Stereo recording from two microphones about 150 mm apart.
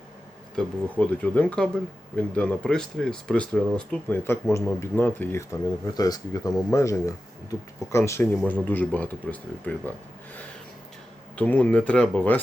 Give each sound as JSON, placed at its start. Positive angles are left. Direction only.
{"t": 0.5, "sound": "speech", "side_deg": 10}
{"t": 11.3, "sound": "speech", "side_deg": 10}